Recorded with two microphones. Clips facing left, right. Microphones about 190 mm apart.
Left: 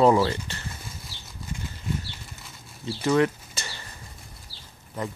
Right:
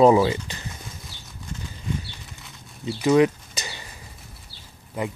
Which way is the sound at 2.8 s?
15° right (ahead or behind).